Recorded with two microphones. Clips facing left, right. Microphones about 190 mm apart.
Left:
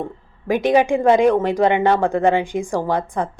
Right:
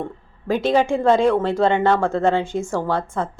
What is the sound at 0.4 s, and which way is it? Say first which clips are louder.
A woman's voice: left 2 dB; 15° left (ahead or behind).